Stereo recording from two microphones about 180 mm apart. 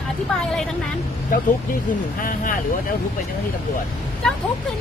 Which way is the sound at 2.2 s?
50° left (ahead or behind).